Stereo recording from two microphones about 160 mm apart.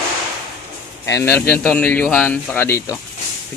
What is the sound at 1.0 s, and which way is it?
Speech, 15° left (ahead or behind).